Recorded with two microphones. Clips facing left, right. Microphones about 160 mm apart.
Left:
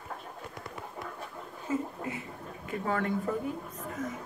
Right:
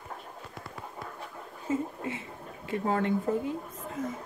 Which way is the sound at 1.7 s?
25° right (ahead or behind).